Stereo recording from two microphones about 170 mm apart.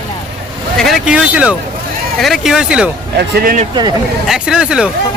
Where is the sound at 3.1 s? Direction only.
65° right (ahead or behind).